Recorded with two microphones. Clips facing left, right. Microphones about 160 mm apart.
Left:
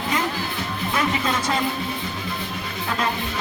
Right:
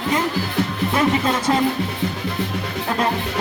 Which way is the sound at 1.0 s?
30° right (ahead or behind).